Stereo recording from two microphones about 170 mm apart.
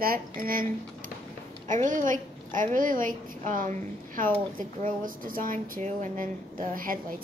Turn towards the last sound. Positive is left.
turn(degrees=-55)  # may be behind; listen again after turning